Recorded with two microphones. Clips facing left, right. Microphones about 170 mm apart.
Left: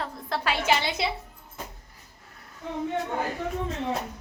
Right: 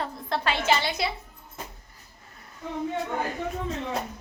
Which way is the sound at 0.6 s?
20° left (ahead or behind).